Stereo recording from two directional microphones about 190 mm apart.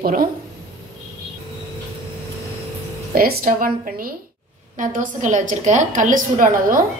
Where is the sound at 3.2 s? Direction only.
50° right (ahead or behind).